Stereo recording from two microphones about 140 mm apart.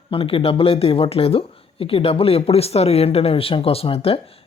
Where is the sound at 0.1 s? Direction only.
40° left (ahead or behind).